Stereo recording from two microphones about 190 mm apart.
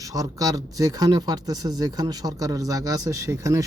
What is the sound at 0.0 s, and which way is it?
A man's voice, 20° right (ahead or behind).